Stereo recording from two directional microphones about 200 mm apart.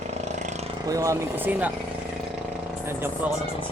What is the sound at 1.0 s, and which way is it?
Speech, 10° right (ahead or behind).